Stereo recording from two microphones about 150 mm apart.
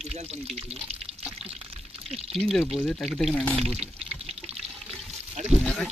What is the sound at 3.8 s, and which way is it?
Speech, 45° right (ahead or behind).